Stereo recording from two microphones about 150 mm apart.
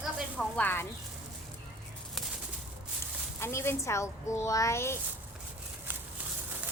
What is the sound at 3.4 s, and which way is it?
A woman's voice, 15° left (ahead or behind).